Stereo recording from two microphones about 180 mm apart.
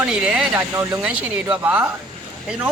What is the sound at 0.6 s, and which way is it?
Speech, 15° right (ahead or behind).